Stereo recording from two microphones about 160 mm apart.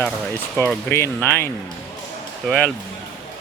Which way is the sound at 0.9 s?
15° left (ahead or behind).